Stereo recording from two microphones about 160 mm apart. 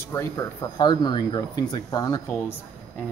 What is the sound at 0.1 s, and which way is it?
Speech, 20° left (ahead or behind).